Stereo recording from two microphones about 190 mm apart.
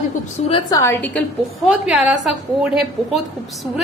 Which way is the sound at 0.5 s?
15° left (ahead or behind).